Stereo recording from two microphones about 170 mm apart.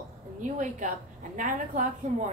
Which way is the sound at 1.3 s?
50° right (ahead or behind).